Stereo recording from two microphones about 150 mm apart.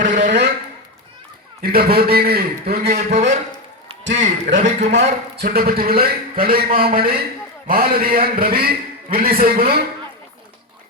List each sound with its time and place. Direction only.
0.0 s a sound: 60° right (ahead or behind)
1.6 s a man's voice: 90° right
2.9 s a man's voice: 50° right (ahead or behind)
5.4 s a man's voice: 80° right